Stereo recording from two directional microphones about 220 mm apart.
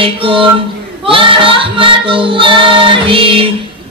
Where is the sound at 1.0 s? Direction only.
25° right (ahead or behind).